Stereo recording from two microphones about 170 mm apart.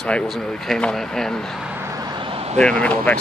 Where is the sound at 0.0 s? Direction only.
5° left (ahead or behind).